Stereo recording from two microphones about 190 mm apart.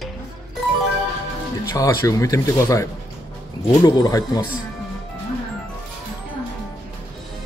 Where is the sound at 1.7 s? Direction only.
15° left (ahead or behind).